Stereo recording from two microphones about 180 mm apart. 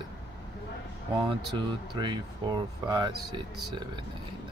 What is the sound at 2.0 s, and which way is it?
Speech, 25° right (ahead or behind).